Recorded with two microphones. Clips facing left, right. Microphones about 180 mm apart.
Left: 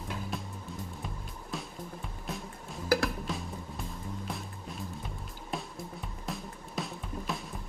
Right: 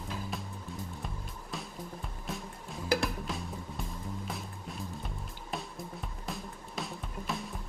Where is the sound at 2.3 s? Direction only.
Centre (ahead or behind).